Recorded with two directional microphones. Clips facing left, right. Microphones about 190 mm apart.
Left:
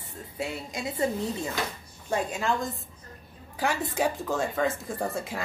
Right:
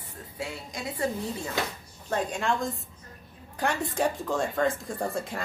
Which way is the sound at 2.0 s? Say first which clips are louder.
Even; 5° left (ahead or behind).